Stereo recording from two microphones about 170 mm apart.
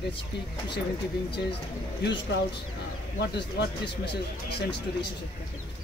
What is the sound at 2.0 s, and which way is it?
Speech, 90° left.